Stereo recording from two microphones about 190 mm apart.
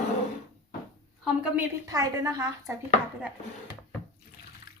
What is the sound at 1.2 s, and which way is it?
Speech, 5° right (ahead or behind).